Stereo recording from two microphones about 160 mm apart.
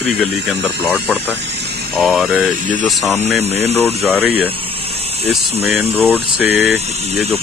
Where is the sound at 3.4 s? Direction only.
40° right (ahead or behind).